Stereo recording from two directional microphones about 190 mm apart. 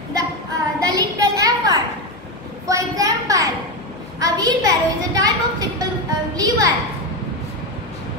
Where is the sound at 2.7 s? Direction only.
20° right (ahead or behind).